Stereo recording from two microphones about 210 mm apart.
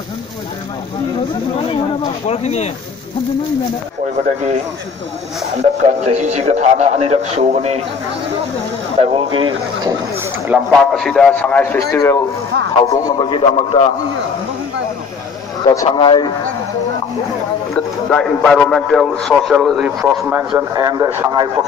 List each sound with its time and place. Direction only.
2.2 s speech: 30° left (ahead or behind)
5.6 s speech: 35° right (ahead or behind)
9.0 s speech: 25° right (ahead or behind)
10.1 s a man's voice: 5° right (ahead or behind); by 13.8 s 25° left (ahead or behind)
15.6 s a man's voice: 20° left (ahead or behind)
17.7 s a man's voice: 5° left (ahead or behind); by 21.5 s 15° right (ahead or behind)